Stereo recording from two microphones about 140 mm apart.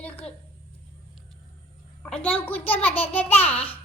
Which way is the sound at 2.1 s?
10° left (ahead or behind).